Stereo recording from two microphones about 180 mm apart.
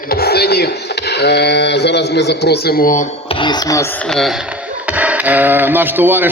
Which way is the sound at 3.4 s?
20° left (ahead or behind).